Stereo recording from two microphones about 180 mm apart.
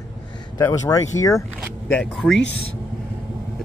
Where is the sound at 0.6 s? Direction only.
20° left (ahead or behind).